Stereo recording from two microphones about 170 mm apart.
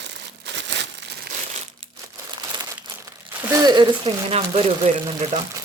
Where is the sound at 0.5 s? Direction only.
90° right.